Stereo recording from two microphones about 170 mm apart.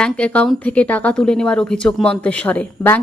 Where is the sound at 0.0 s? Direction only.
5° left (ahead or behind).